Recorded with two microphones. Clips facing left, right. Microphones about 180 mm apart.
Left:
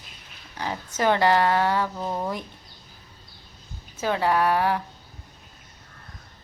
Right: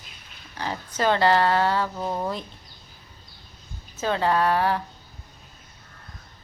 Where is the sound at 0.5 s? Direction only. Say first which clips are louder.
Even; 15° left (ahead or behind).